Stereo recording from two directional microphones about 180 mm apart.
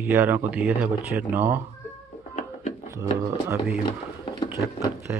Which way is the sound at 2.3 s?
45° left (ahead or behind).